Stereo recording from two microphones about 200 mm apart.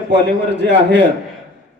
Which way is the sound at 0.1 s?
60° right (ahead or behind).